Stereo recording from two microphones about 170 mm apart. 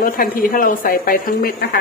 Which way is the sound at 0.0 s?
55° left (ahead or behind).